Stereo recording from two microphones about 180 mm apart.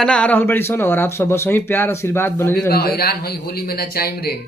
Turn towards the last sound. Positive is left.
turn(degrees=60)  # may be behind; listen again after turning